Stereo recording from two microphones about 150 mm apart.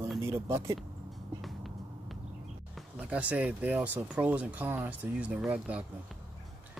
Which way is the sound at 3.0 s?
10° right (ahead or behind).